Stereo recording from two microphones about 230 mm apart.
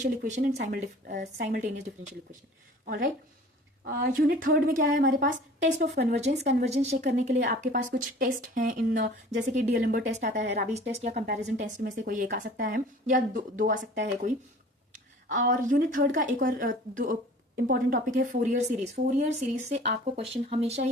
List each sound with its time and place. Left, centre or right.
0.0 s speech: right
2.8 s speech: right
6.1 s speech: right